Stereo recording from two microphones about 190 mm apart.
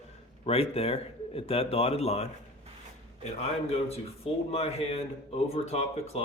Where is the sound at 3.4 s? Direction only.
35° left (ahead or behind).